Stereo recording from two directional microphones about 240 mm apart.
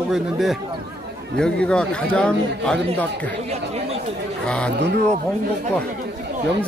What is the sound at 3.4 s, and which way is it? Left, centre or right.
Speech, right.